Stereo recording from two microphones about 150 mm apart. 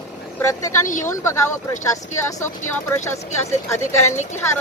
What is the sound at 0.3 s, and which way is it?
A woman's voice, 20° left (ahead or behind).